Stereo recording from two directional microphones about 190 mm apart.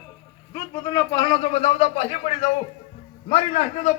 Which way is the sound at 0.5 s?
20° left (ahead or behind).